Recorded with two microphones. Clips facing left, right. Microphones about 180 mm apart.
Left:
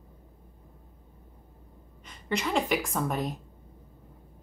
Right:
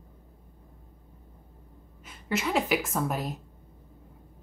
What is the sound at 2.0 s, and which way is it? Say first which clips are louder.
A woman's voice: right 1 dB; 5° right (ahead or behind).